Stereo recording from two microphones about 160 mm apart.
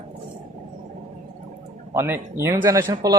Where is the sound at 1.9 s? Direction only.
15° right (ahead or behind).